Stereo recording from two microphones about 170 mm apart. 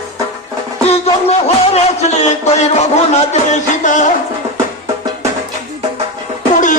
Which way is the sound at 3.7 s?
45° left (ahead or behind).